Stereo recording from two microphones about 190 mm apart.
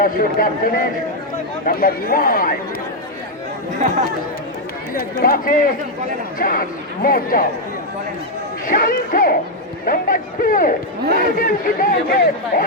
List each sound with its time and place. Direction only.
0.0 s speech: 50° left (ahead or behind)
4.9 s speech: 50° left (ahead or behind)
8.6 s speech: 50° left (ahead or behind)